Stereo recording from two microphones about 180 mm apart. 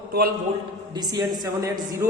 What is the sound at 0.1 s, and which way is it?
Speech, 60° right (ahead or behind).